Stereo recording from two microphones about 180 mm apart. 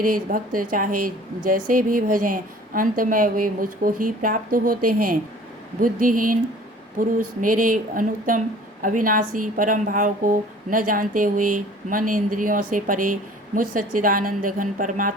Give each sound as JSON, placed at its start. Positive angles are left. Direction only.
{"t": 0.0, "sound": "a woman's voice", "side_deg": -50}